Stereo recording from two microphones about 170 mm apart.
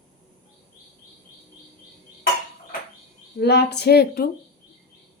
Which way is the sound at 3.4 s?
75° left (ahead or behind).